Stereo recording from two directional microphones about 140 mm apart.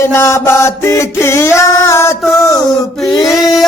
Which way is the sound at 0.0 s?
20° left (ahead or behind).